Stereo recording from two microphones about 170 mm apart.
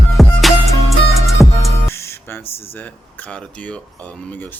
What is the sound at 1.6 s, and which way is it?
Music, 15° left (ahead or behind).